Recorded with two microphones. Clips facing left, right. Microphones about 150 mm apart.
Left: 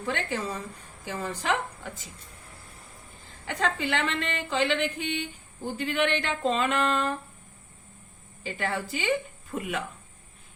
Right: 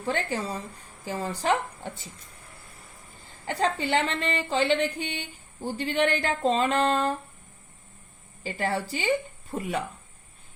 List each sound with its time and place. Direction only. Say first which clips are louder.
0.0 s speech: right 2 dB; 35° right (ahead or behind)
3.4 s speech: right 2 dB; 35° right (ahead or behind)
8.4 s speech: right 2 dB; 35° right (ahead or behind)